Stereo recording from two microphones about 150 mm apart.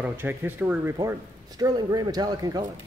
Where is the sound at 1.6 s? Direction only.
25° right (ahead or behind).